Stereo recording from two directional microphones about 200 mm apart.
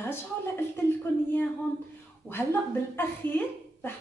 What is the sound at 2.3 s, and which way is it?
Speech, 10° left (ahead or behind).